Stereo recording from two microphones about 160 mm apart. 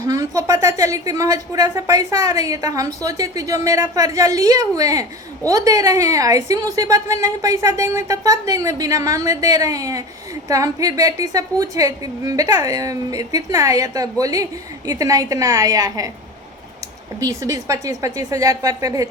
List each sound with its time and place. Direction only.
0.0 s a woman's voice: 20° right (ahead or behind)
17.2 s a woman's voice: 20° right (ahead or behind)